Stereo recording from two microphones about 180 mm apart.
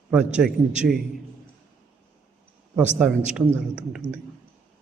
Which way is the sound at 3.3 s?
5° right (ahead or behind).